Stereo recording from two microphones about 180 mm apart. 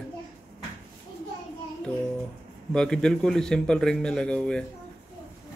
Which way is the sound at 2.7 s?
5° left (ahead or behind).